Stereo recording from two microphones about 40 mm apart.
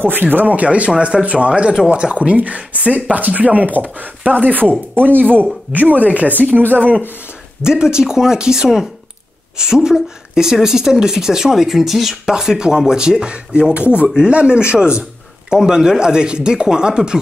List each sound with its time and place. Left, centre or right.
0.0 s speech: right
7.6 s speech: centre